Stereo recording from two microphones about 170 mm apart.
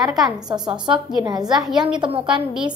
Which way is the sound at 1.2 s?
25° right (ahead or behind).